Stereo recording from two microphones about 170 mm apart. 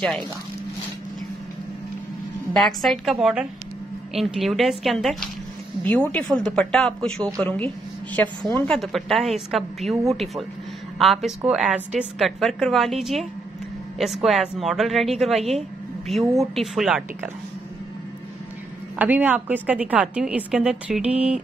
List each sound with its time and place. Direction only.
2.5 s a woman's voice: centre (ahead or behind)
18.9 s a woman's voice: 10° right (ahead or behind)